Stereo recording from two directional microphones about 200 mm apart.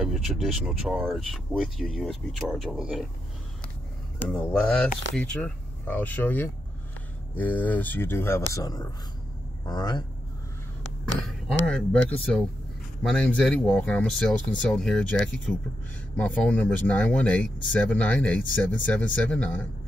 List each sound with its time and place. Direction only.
0.0 s speech: centre (ahead or behind)
4.2 s speech: 5° left (ahead or behind); by 10.0 s 20° left (ahead or behind)
11.6 s speech: 5° left (ahead or behind)
13.0 s speech: 5° left (ahead or behind)